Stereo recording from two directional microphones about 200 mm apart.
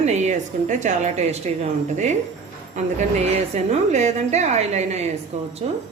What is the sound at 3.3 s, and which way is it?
Speech, 35° right (ahead or behind).